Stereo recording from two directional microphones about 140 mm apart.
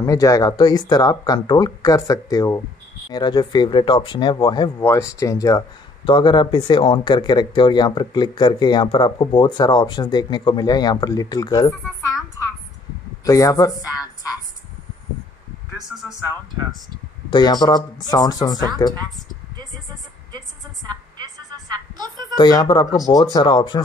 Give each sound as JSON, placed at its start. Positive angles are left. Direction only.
{"t": 0.0, "sound": "speech", "side_deg": 25}
{"t": 13.2, "sound": "speech", "side_deg": 25}
{"t": 17.3, "sound": "speech", "side_deg": 30}
{"t": 20.9, "sound": "a sound", "side_deg": -30}
{"t": 22.3, "sound": "speech", "side_deg": 30}